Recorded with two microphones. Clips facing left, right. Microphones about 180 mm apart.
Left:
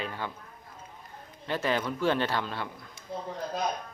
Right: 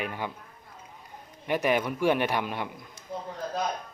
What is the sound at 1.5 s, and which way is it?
A man's voice, 15° right (ahead or behind).